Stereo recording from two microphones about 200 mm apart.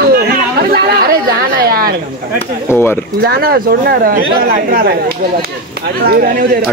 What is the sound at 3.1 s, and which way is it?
Speech, 50° right (ahead or behind).